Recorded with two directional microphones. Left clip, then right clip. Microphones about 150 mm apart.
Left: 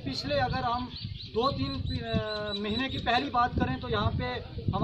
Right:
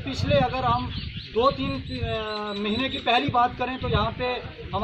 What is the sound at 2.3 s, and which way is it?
Speech, 20° left (ahead or behind).